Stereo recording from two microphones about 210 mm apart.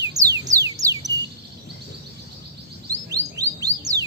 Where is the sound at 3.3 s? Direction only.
15° right (ahead or behind).